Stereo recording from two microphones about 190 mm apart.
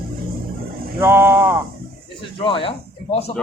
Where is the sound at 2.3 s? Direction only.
25° left (ahead or behind).